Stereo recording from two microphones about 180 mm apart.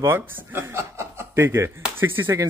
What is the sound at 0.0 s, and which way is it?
A man's voice, 10° right (ahead or behind).